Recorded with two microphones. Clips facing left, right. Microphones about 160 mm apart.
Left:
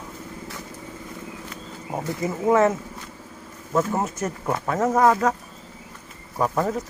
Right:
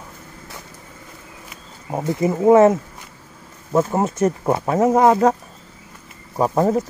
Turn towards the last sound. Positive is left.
turn(degrees=-30)  # may be behind; listen again after turning